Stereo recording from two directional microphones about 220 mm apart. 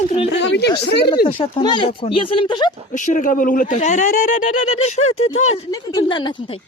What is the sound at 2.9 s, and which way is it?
Speech, 35° left (ahead or behind).